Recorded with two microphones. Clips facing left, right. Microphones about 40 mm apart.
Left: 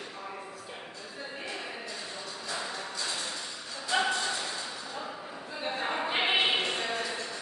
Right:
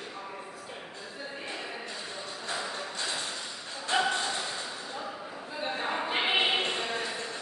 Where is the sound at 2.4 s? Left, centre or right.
Right.